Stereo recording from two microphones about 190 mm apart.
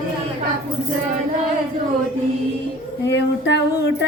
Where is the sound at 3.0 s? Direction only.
65° left (ahead or behind).